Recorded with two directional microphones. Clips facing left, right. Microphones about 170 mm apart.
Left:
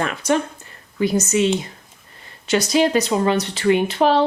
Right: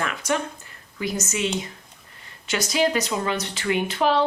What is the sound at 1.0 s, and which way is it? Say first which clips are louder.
Speech: left 9 dB; 30° left (ahead or behind).